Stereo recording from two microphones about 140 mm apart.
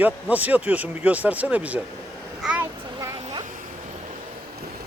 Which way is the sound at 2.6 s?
25° right (ahead or behind).